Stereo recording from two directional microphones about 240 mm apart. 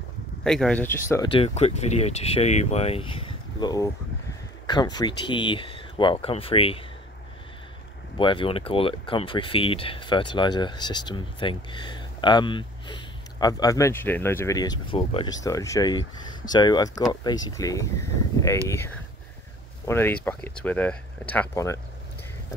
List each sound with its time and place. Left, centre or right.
0.4 s speech: centre; by 6.8 s left
8.2 s speech: left